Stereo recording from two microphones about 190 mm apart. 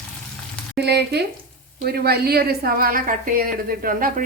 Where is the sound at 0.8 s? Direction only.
60° right (ahead or behind).